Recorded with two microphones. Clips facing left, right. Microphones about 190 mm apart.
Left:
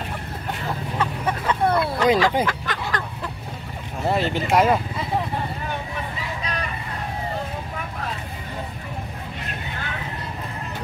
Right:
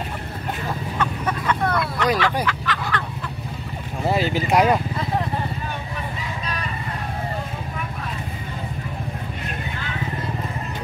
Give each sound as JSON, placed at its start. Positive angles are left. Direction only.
{"t": 0.9, "sound": "vehicle", "side_deg": 30}
{"t": 2.4, "sound": "a sound", "side_deg": 45}
{"t": 4.0, "sound": "speech", "side_deg": 0}